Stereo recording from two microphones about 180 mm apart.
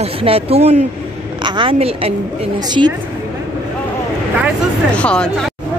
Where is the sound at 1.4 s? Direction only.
25° right (ahead or behind).